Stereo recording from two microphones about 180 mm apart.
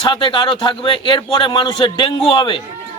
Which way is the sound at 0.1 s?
30° left (ahead or behind).